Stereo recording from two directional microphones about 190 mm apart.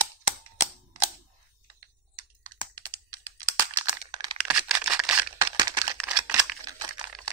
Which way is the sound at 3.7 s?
10° right (ahead or behind).